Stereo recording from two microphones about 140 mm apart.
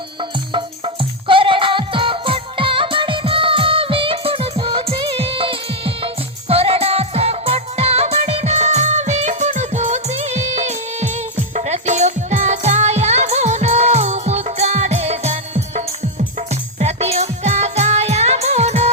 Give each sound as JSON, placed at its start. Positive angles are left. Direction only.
{"t": 1.3, "sound": "music", "side_deg": -40}
{"t": 16.8, "sound": "music", "side_deg": -50}